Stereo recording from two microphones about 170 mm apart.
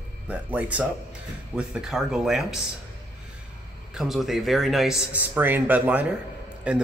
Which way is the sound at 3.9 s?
Centre (ahead or behind).